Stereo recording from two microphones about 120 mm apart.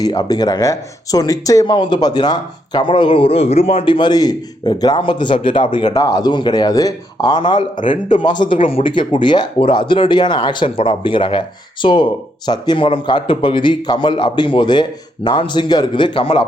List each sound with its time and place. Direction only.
0.0 s speech: 30° left (ahead or behind)
5.9 s speech: 30° left (ahead or behind); by 16.4 s 45° left (ahead or behind)